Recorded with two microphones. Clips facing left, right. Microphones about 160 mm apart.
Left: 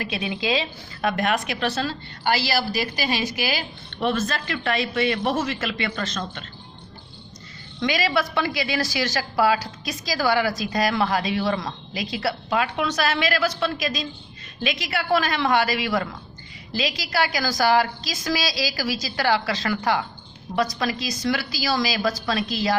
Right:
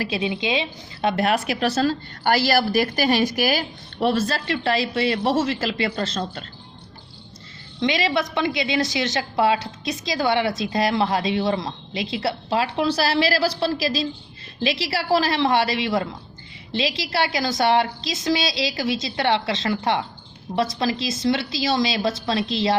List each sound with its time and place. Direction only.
0.0 s a woman's voice: 25° right (ahead or behind); by 3.6 s 45° right (ahead or behind)
4.0 s a woman's voice: 35° right (ahead or behind)
7.8 s a woman's voice: 25° right (ahead or behind)